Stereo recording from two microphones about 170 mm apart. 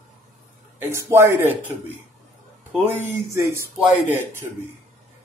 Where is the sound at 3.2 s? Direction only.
15° right (ahead or behind).